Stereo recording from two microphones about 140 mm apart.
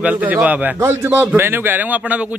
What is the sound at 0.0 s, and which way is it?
A man's voice, 10° right (ahead or behind).